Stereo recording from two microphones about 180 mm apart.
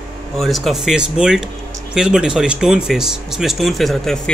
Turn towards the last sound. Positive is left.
turn(degrees=0)  # may be behind; listen again after turning